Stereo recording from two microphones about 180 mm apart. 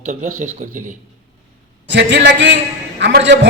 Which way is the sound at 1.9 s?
75° right (ahead or behind).